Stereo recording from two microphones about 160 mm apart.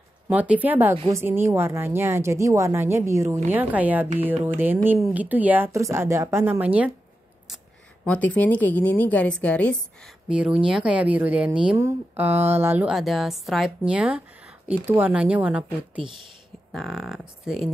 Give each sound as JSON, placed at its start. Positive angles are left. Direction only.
{"t": 0.3, "sound": "a woman's voice", "side_deg": -10}
{"t": 8.0, "sound": "a woman's voice", "side_deg": 10}
{"t": 10.2, "sound": "a woman's voice", "side_deg": -5}
{"t": 12.9, "sound": "a woman's voice", "side_deg": 0}